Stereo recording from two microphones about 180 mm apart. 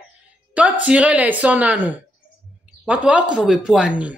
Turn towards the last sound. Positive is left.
turn(degrees=-5)  # may be behind; listen again after turning